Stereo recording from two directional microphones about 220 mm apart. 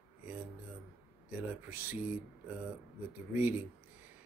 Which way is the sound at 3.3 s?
10° right (ahead or behind).